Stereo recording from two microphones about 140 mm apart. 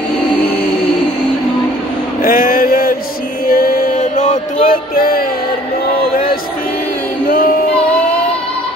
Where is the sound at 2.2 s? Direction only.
90° left.